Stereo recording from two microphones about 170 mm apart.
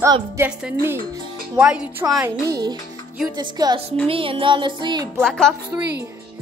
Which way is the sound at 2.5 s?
25° right (ahead or behind).